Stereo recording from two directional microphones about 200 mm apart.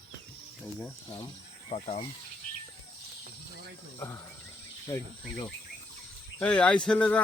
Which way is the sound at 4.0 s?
15° left (ahead or behind).